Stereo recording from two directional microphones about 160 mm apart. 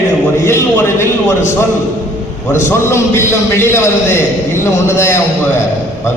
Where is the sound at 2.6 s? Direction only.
15° left (ahead or behind).